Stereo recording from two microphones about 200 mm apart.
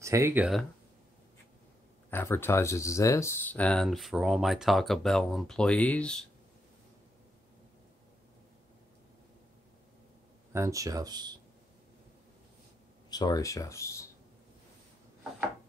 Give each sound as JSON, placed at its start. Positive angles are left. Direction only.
{"t": 0.0, "sound": "speech", "side_deg": -15}
{"t": 2.0, "sound": "speech", "side_deg": 10}
{"t": 10.5, "sound": "speech", "side_deg": -15}
{"t": 13.1, "sound": "speech", "side_deg": 20}